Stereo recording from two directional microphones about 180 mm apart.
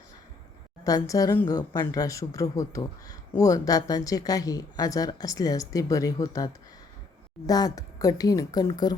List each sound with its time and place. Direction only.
0.9 s a woman's voice: 20° left (ahead or behind)